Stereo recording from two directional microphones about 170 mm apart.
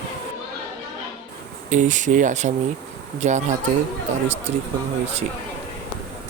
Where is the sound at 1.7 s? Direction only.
45° right (ahead or behind).